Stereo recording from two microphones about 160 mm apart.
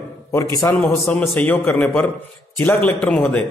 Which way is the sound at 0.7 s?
5° left (ahead or behind).